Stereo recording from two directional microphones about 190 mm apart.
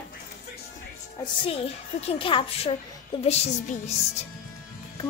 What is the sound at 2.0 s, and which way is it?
A child's voice, 25° left (ahead or behind).